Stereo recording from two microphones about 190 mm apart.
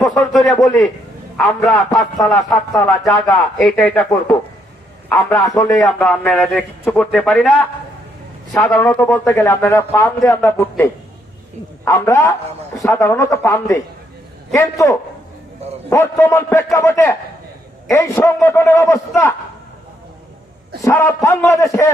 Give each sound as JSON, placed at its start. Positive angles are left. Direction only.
{"t": 0.1, "sound": "a man's voice", "side_deg": 0}
{"t": 8.7, "sound": "a man's voice", "side_deg": 10}
{"t": 20.8, "sound": "a man's voice", "side_deg": 15}